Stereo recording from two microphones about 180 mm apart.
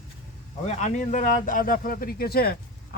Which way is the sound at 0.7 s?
45° left (ahead or behind).